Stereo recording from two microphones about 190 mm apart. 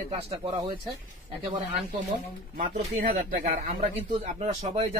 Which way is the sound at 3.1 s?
40° right (ahead or behind).